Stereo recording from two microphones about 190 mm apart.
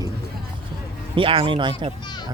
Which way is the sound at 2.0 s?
25° left (ahead or behind).